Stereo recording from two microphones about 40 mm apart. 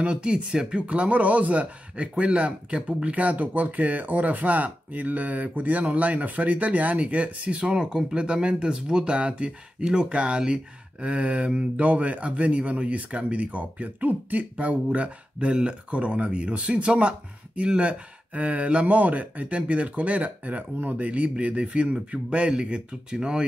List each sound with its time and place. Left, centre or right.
0.0 s speech: right
0.7 s speech: right